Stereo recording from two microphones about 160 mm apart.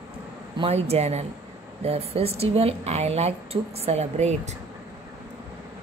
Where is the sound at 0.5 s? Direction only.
40° right (ahead or behind).